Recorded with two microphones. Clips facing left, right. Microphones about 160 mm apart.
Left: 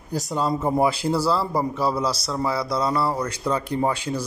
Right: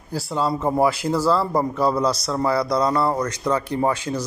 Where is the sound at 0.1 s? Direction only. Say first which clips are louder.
Right 1 dB; 15° left (ahead or behind).